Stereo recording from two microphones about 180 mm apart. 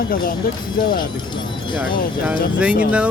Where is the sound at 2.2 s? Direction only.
10° right (ahead or behind).